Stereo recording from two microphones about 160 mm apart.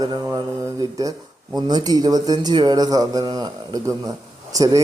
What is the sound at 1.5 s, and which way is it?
Speech, 25° right (ahead or behind).